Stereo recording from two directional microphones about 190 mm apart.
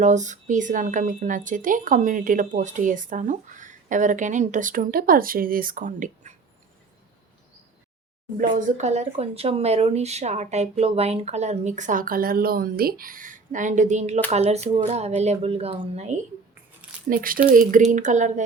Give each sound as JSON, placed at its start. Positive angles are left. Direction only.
{"t": 0.0, "sound": "speech", "side_deg": -40}
{"t": 8.4, "sound": "speech", "side_deg": -40}
{"t": 17.1, "sound": "speech", "side_deg": -50}